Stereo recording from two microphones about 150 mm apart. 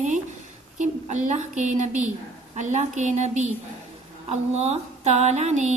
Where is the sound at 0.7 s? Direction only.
50° right (ahead or behind).